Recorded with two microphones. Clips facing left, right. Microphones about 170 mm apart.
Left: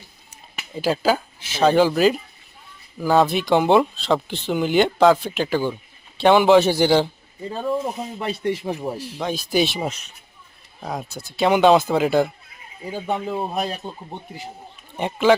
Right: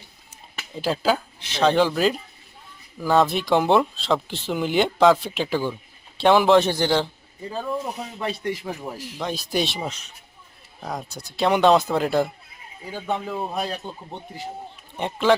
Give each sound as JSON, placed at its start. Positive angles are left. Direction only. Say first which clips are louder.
{"t": 0.7, "sound": "speech", "louder": "left 2 dB", "side_deg": 0}
{"t": 7.5, "sound": "speech", "louder": "left 4 dB", "side_deg": 25}
{"t": 9.2, "sound": "a man's voice", "louder": "left 4 dB", "side_deg": 0}
{"t": 13.2, "sound": "a man's voice", "louder": "left 3 dB", "side_deg": 25}
{"t": 14.9, "sound": "speech", "louder": "left 3 dB", "side_deg": 0}